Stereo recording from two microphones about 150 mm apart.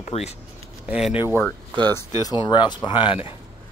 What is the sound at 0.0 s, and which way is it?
Speech, 45° left (ahead or behind).